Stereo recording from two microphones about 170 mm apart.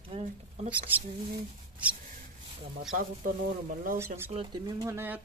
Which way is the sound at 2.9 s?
55° right (ahead or behind).